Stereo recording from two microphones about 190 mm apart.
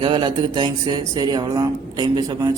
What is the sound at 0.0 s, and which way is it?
Speech, 25° right (ahead or behind).